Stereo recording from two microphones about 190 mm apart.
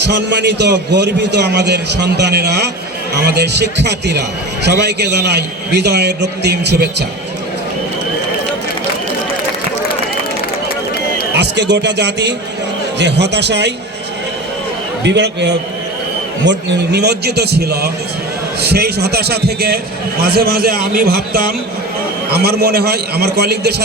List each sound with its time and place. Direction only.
0.0 s a man's voice: 65° right (ahead or behind)
11.3 s a man's voice: 65° right (ahead or behind)
15.0 s a man's voice: 65° right (ahead or behind)